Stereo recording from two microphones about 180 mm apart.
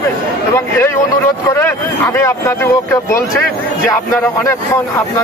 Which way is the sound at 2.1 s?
15° left (ahead or behind).